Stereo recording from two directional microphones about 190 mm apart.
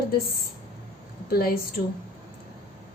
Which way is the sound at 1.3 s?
55° left (ahead or behind).